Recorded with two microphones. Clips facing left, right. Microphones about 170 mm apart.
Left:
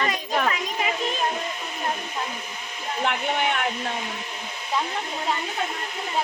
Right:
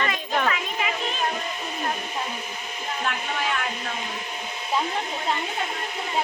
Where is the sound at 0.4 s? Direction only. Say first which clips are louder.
Even; 35° left (ahead or behind).